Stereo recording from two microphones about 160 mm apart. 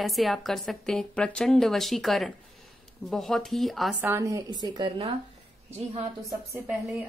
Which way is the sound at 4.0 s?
15° right (ahead or behind).